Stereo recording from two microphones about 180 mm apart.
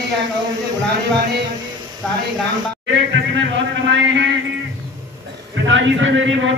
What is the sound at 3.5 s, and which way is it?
Speech, 80° right.